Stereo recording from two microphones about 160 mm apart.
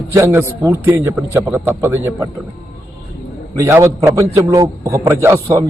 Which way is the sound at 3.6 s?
15° right (ahead or behind).